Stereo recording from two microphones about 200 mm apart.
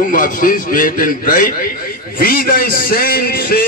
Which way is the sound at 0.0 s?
45° left (ahead or behind).